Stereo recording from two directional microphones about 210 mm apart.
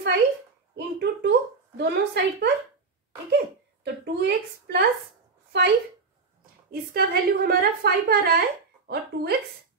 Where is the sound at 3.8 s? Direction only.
55° right (ahead or behind).